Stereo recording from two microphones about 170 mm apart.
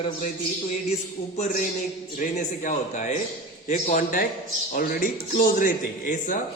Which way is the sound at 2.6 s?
45° left (ahead or behind).